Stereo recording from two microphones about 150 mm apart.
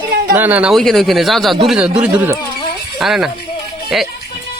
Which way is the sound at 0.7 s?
Centre (ahead or behind).